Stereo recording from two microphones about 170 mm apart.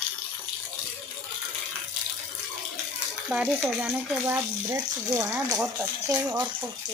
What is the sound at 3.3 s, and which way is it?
Speech, 10° right (ahead or behind).